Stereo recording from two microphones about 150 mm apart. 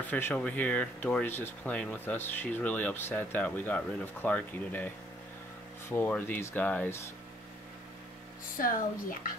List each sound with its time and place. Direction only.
0.0 s speech: 10° left (ahead or behind)
5.9 s speech: 15° left (ahead or behind)
8.6 s speech: 70° left (ahead or behind)